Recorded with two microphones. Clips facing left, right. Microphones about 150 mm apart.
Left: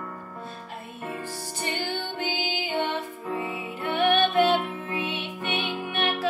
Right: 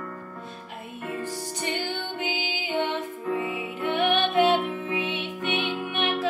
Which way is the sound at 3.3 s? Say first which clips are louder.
Even; 15° right (ahead or behind).